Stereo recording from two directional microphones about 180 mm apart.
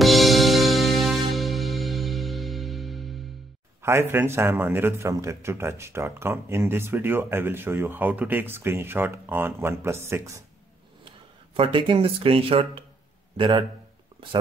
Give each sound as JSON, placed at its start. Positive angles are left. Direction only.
{"t": 0.0, "sound": "music", "side_deg": 0}
{"t": 3.8, "sound": "speech", "side_deg": -15}
{"t": 11.1, "sound": "speech", "side_deg": -30}